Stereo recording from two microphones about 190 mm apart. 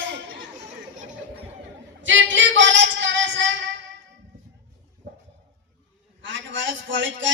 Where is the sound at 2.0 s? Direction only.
80° right.